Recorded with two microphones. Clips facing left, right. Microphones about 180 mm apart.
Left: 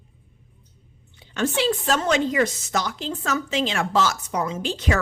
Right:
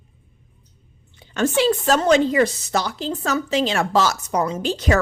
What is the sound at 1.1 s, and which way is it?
Speech, 45° right (ahead or behind).